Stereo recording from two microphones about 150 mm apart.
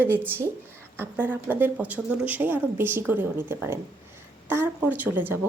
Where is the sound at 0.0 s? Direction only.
15° right (ahead or behind).